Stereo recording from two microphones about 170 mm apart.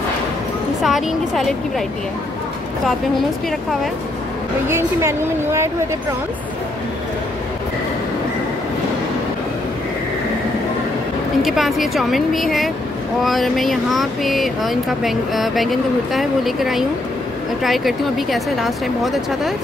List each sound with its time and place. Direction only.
0.8 s speech: centre (ahead or behind)
4.6 s a woman's voice: 15° right (ahead or behind)
11.4 s speech: centre (ahead or behind)